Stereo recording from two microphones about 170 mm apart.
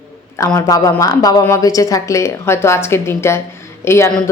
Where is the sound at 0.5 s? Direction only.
20° left (ahead or behind).